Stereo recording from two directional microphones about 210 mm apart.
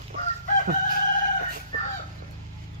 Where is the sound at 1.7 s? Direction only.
40° right (ahead or behind).